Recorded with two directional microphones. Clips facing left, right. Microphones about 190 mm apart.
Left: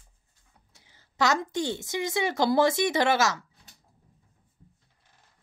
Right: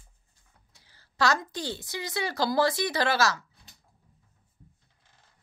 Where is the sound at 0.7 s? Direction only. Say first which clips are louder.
Left 2 dB; 20° left (ahead or behind).